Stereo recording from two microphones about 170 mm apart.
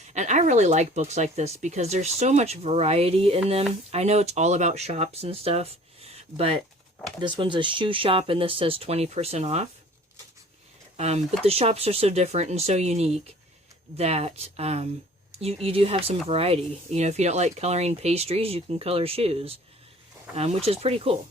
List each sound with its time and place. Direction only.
0.1 s speech: 45° right (ahead or behind)
10.9 s speech: 40° right (ahead or behind)